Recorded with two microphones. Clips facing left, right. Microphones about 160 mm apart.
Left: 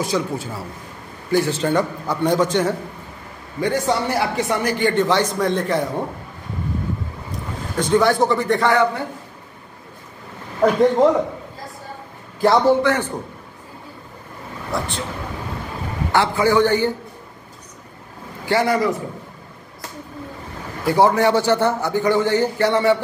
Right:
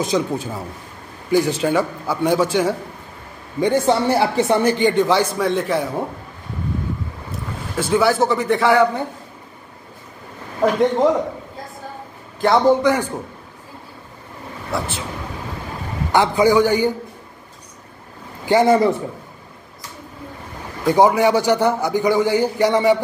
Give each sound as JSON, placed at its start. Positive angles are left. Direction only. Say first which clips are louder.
{"t": 0.0, "sound": "a man's voice", "louder": "right 2 dB", "side_deg": -20}
{"t": 3.6, "sound": "a man's voice", "louder": "right 4 dB", "side_deg": -25}
{"t": 7.7, "sound": "a man's voice", "louder": "even", "side_deg": -5}
{"t": 10.6, "sound": "a man's voice", "louder": "left 2 dB", "side_deg": 0}
{"t": 12.4, "sound": "a man's voice", "louder": "even", "side_deg": 0}
{"t": 12.6, "sound": "a man's voice", "louder": "right 1 dB", "side_deg": -15}
{"t": 16.1, "sound": "a man's voice", "louder": "right 3 dB", "side_deg": -15}
{"t": 18.4, "sound": "a man's voice", "louder": "right 4 dB", "side_deg": -20}
{"t": 20.8, "sound": "a man's voice", "louder": "right 1 dB", "side_deg": -15}